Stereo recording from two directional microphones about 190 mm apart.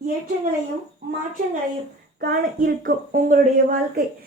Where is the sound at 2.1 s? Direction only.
50° right (ahead or behind).